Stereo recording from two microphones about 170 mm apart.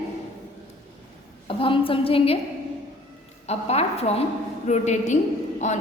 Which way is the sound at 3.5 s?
40° left (ahead or behind).